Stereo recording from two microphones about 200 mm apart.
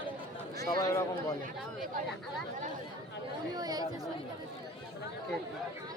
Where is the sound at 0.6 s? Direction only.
15° left (ahead or behind).